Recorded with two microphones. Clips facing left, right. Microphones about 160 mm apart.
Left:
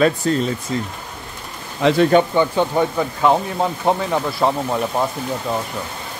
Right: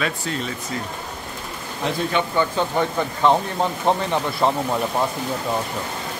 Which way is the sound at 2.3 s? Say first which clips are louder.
Left 4 dB; 15° left (ahead or behind).